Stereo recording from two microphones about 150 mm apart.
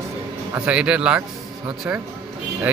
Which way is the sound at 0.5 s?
10° right (ahead or behind).